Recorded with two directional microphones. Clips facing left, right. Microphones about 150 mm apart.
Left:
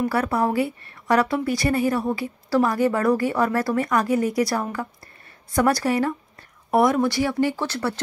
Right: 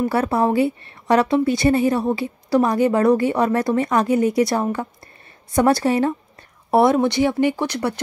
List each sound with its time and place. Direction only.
0.1 s a woman's voice: 25° right (ahead or behind)